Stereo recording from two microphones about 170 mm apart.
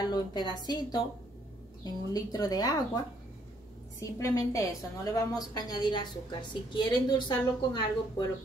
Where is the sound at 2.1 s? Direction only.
20° left (ahead or behind).